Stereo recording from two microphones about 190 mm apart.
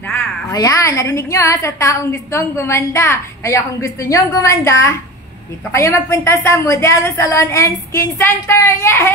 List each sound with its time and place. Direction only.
0.5 s a woman's voice: 15° left (ahead or behind)